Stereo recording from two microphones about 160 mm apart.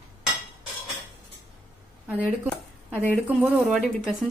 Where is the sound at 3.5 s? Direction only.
Centre (ahead or behind).